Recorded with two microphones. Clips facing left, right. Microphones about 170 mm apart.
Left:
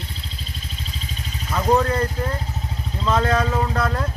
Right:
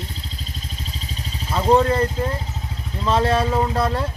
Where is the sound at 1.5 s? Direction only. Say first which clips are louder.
Right 2 dB; 25° right (ahead or behind).